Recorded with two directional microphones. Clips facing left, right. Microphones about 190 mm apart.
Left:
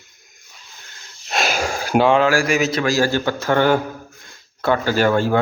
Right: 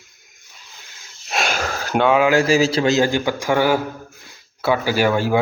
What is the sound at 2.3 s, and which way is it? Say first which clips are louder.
A man's voice: right 3 dB; 25° right (ahead or behind).